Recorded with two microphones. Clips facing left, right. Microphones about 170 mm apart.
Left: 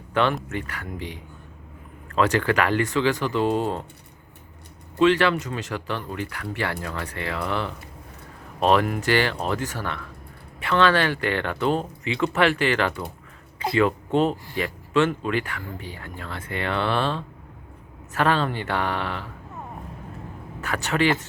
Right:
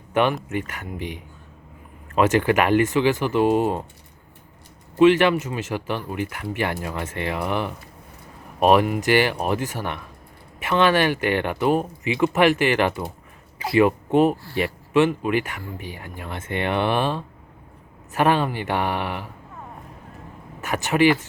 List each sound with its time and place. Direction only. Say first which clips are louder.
0.1 s speech: right 2 dB; 15° right (ahead or behind)
4.9 s speech: right 4 dB; 15° right (ahead or behind)
20.6 s speech: right 4 dB; 15° right (ahead or behind)